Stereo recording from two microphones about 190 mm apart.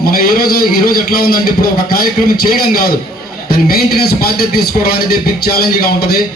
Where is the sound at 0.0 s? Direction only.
50° left (ahead or behind).